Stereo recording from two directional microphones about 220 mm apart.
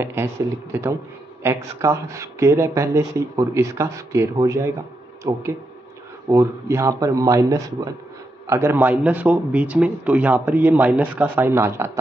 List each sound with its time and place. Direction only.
0.0 s a man's voice: 10° right (ahead or behind)